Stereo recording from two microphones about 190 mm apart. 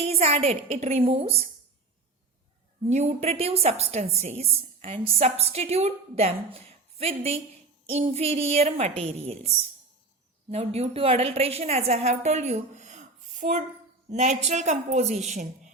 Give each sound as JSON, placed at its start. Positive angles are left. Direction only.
{"t": 0.0, "sound": "a woman's voice", "side_deg": -30}
{"t": 2.8, "sound": "a woman's voice", "side_deg": -35}
{"t": 10.5, "sound": "a woman's voice", "side_deg": -30}